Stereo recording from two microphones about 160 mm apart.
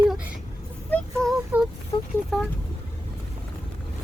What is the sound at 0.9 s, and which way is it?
Speech, 5° left (ahead or behind).